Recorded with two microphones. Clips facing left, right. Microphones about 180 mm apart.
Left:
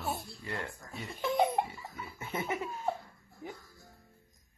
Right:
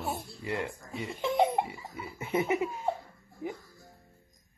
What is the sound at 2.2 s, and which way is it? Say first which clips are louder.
Laughter: right 7 dB; 20° right (ahead or behind).